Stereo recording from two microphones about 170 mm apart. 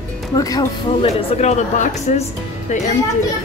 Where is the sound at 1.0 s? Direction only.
40° left (ahead or behind).